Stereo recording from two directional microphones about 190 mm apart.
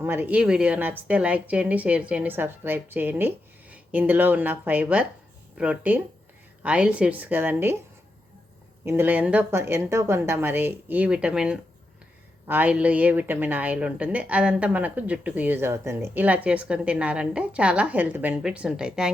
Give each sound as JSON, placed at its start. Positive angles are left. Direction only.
{"t": 0.0, "sound": "a woman's voice", "side_deg": -10}
{"t": 8.8, "sound": "a woman's voice", "side_deg": -10}